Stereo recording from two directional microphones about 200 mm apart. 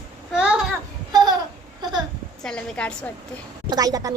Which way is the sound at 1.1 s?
20° right (ahead or behind).